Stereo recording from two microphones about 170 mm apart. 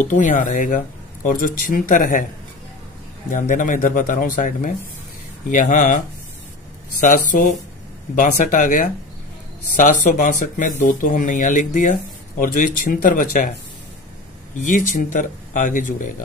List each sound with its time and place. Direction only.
0.1 s speech: 50° left (ahead or behind)
3.3 s speech: 50° left (ahead or behind)
15.1 s speech: 50° left (ahead or behind)